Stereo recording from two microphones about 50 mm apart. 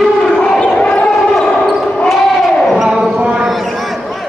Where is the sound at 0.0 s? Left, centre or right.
Centre.